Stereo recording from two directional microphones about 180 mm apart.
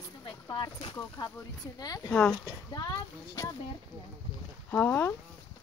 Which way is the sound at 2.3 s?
20° left (ahead or behind).